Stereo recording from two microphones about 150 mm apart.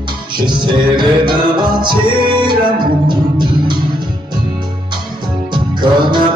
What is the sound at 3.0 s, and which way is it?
Music, 30° right (ahead or behind).